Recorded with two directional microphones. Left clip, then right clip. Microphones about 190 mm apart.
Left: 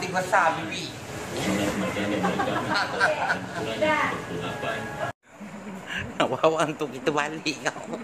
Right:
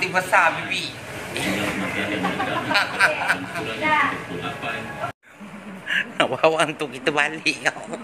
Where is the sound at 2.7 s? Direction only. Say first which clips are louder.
Right 6 dB; 20° right (ahead or behind).